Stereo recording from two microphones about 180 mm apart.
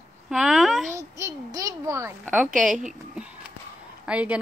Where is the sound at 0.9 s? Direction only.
15° right (ahead or behind).